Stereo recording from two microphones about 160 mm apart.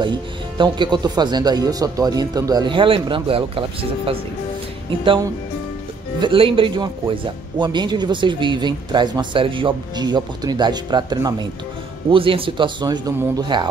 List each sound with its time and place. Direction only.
0.0 s speech: 30° right (ahead or behind)
6.1 s speech: 30° right (ahead or behind)